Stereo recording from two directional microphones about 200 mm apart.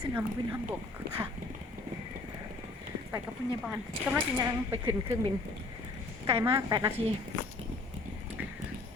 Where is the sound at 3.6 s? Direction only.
5° right (ahead or behind).